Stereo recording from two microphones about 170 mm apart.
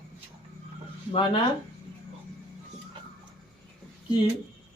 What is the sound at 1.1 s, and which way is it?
Speech, 30° left (ahead or behind).